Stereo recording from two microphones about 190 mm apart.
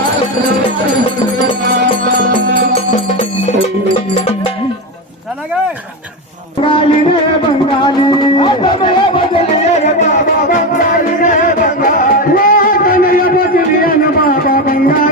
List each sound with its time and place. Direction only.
4.1 s music: 30° left (ahead or behind)
6.6 s music: 30° left (ahead or behind); by 15.1 s 50° left (ahead or behind)